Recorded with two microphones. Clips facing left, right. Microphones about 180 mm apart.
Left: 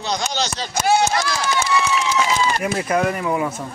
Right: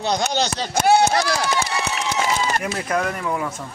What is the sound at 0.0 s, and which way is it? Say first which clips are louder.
Speech: right 2 dB; 55° right (ahead or behind).